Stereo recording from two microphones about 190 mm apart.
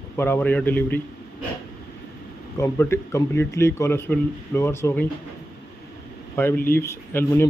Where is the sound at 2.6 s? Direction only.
15° left (ahead or behind).